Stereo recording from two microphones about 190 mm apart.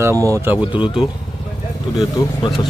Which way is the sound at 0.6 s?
25° left (ahead or behind).